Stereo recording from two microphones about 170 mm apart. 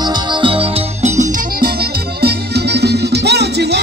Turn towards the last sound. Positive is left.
turn(degrees=-80)